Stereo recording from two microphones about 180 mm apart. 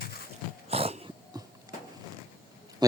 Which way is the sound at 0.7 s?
35° right (ahead or behind).